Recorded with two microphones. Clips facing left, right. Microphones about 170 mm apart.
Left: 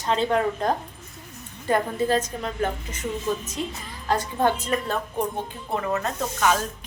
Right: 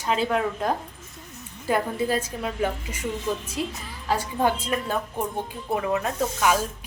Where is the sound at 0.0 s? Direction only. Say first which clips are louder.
Left 2 dB; 5° right (ahead or behind).